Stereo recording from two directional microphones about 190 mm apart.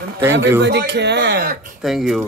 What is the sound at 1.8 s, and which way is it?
Speech, centre (ahead or behind).